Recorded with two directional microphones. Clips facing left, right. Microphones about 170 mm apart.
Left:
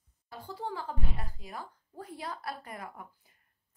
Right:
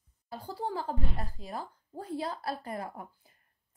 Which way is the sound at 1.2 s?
35° right (ahead or behind).